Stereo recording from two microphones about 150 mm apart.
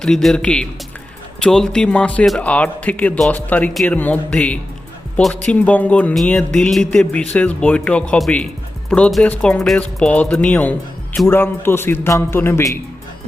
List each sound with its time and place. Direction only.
0.0 s speech: centre (ahead or behind)